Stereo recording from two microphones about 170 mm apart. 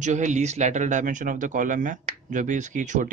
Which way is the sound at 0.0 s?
45° right (ahead or behind).